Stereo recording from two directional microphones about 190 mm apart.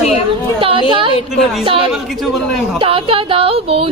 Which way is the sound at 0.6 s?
25° right (ahead or behind).